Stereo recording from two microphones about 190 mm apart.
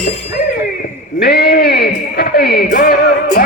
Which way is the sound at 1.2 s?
55° left (ahead or behind).